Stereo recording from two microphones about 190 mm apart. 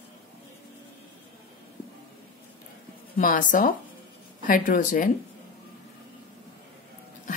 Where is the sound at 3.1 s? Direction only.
45° left (ahead or behind).